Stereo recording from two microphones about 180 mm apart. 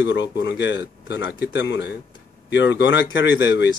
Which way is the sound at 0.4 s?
85° left.